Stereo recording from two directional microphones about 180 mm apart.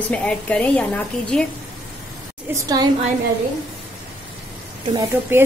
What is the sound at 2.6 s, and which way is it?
Speech, 20° right (ahead or behind).